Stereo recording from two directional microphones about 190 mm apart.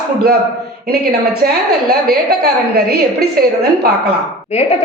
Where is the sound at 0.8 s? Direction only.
55° right (ahead or behind).